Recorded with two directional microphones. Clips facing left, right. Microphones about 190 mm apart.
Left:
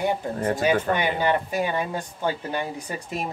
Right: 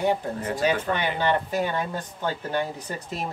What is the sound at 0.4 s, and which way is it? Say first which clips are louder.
Speech: left 3 dB; 50° left (ahead or behind).